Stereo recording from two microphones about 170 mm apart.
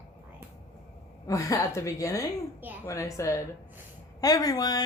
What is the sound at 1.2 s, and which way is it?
A woman's voice, 20° left (ahead or behind).